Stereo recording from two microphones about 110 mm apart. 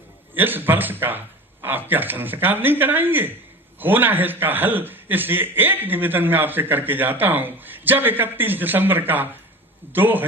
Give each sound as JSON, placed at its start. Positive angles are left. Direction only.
{"t": 0.3, "sound": "a man's voice", "side_deg": -20}